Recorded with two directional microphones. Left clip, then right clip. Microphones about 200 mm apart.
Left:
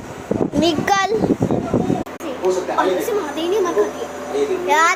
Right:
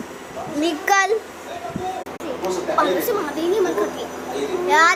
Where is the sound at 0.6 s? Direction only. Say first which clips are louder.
Even; 10° left (ahead or behind).